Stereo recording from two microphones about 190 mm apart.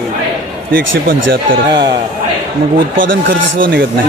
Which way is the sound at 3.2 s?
55° right (ahead or behind).